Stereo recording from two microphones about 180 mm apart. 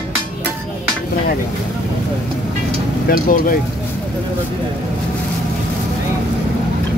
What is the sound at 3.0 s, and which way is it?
Speech, 50° left (ahead or behind).